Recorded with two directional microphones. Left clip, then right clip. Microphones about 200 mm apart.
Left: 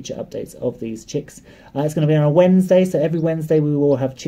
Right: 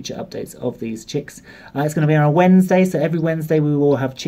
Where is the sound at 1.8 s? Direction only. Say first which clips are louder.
Right 1 dB; 10° right (ahead or behind).